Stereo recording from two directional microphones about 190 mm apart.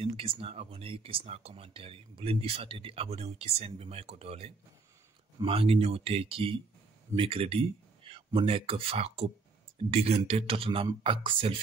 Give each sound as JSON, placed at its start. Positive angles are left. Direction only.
{"t": 0.0, "sound": "speech", "side_deg": -30}